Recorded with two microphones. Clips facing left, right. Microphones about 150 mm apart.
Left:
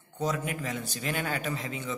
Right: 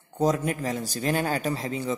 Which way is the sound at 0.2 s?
40° right (ahead or behind).